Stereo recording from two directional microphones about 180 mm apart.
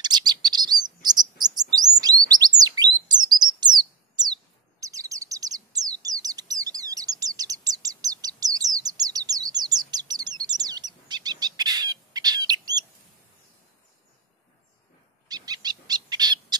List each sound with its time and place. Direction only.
0.0 s chirp: 25° right (ahead or behind)
15.2 s owl: 20° right (ahead or behind)